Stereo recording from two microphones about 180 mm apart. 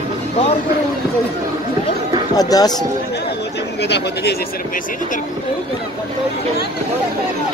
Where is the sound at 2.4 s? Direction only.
20° left (ahead or behind).